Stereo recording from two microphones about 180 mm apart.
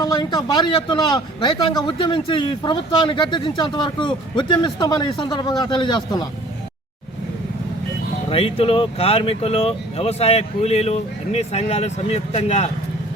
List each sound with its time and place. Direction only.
0.0 s speech: 25° left (ahead or behind)
8.3 s speech: 30° left (ahead or behind)